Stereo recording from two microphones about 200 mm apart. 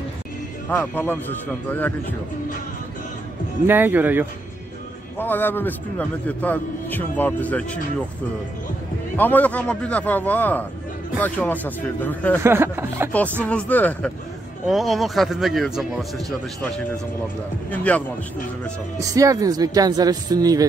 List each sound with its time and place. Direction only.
0.7 s a man's voice: 10° left (ahead or behind)
3.6 s speech: 10° right (ahead or behind)
5.1 s a man's voice: 10° left (ahead or behind)
9.1 s a man's voice: 10° left (ahead or behind)
12.4 s music: 10° right (ahead or behind)
13.4 s a man's voice: 5° left (ahead or behind)
18.9 s speech: 15° right (ahead or behind)